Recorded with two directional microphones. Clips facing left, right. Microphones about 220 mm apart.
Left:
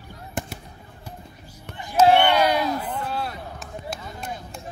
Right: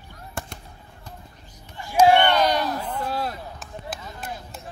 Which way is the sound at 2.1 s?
10° left (ahead or behind).